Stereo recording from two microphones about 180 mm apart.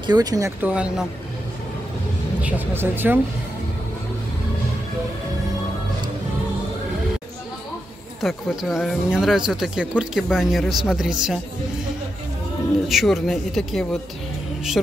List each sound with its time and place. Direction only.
0.0 s speech: 20° right (ahead or behind); by 1.0 s 5° right (ahead or behind)
2.4 s speech: 10° right (ahead or behind)
8.2 s speech: centre (ahead or behind)
12.8 s speech: centre (ahead or behind)